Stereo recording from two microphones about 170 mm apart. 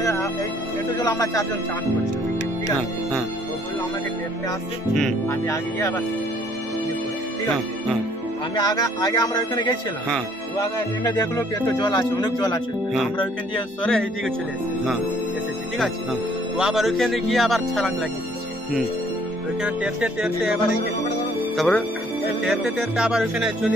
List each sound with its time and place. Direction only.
0.0 s music: 15° left (ahead or behind)
0.9 s speech: 20° left (ahead or behind)
5.3 s speech: 15° left (ahead or behind)
8.5 s speech: 25° left (ahead or behind)
11.1 s speech: 25° left (ahead or behind)
13.8 s speech: 5° left (ahead or behind)
15.8 s speech: 5° right (ahead or behind)
19.6 s speech: 5° right (ahead or behind)
21.5 s speech: 5° left (ahead or behind)